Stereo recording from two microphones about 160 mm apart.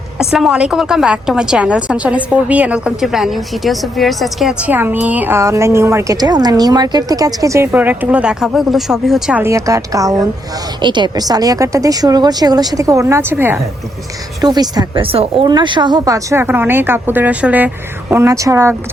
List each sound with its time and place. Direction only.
0.2 s a woman's voice: 5° right (ahead or behind)
9.4 s a woman's voice: 20° right (ahead or behind)
14.4 s a woman's voice: 25° right (ahead or behind)